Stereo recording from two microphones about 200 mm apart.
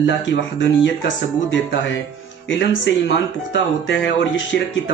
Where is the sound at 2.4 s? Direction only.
65° left (ahead or behind).